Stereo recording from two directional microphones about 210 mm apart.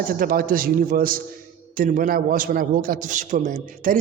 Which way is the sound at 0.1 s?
40° right (ahead or behind).